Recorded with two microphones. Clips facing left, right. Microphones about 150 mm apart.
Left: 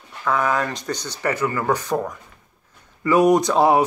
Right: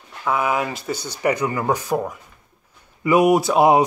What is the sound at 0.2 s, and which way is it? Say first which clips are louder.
Speech: even; 10° right (ahead or behind).